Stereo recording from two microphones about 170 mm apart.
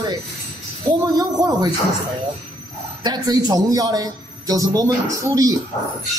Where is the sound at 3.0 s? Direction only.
25° right (ahead or behind).